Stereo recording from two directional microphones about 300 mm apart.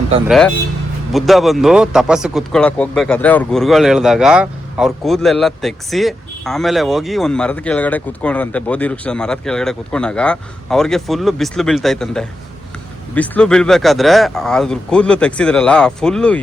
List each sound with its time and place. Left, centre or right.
0.3 s speech: centre